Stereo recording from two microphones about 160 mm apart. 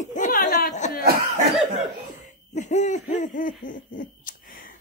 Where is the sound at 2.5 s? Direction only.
45° left (ahead or behind).